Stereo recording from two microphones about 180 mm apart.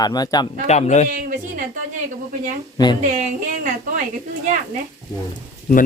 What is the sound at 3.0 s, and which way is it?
Speech, 45° right (ahead or behind).